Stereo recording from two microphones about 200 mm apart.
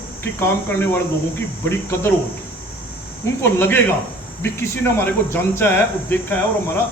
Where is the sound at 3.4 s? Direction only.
10° left (ahead or behind).